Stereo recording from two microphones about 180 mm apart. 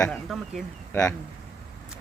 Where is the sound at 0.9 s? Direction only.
15° left (ahead or behind).